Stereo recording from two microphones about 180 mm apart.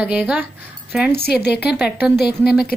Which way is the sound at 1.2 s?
65° left (ahead or behind).